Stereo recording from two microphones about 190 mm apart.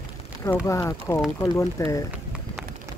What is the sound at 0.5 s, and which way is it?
Speech, 15° left (ahead or behind).